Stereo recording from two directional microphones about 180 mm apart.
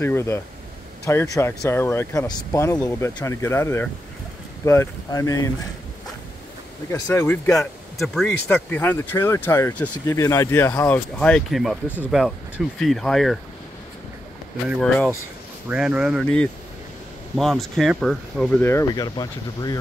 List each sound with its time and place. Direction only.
0.0 s speech: 15° left (ahead or behind)
6.9 s speech: 10° left (ahead or behind)
8.0 s speech: 5° left (ahead or behind)
15.7 s speech: 5° right (ahead or behind)
18.6 s speech: 15° left (ahead or behind)